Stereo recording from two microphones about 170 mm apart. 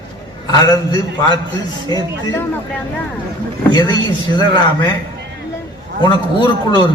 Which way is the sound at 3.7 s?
25° left (ahead or behind).